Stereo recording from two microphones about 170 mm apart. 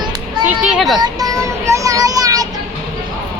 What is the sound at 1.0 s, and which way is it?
Child singing, 20° right (ahead or behind).